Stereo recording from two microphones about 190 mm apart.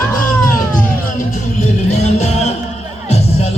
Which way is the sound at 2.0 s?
35° left (ahead or behind).